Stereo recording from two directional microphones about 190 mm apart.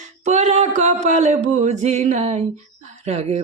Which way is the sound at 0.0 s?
35° right (ahead or behind).